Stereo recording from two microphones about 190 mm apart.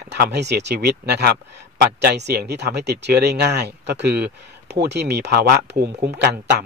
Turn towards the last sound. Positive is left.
turn(degrees=-55)  # may be behind; listen again after turning